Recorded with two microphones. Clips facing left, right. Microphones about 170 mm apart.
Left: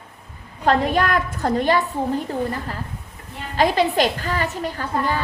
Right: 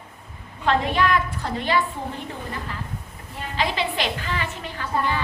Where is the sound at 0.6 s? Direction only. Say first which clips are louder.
Left 3 dB; 40° left (ahead or behind).